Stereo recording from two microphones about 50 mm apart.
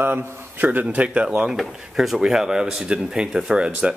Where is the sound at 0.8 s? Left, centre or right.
Right.